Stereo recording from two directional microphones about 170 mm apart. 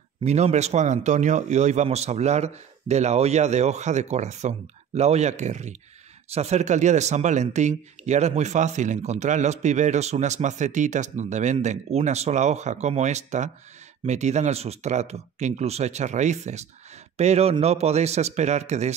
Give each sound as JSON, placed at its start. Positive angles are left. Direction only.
{"t": 0.2, "sound": "a man's voice", "side_deg": -40}